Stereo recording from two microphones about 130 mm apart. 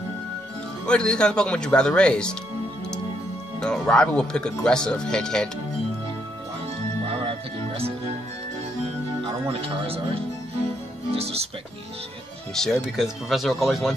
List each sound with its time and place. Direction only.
0.8 s speech: 5° left (ahead or behind)
3.6 s speech: 5° left (ahead or behind)
7.1 s music: 45° right (ahead or behind)
9.5 s speech: 45° right (ahead or behind)
12.5 s speech: 5° left (ahead or behind)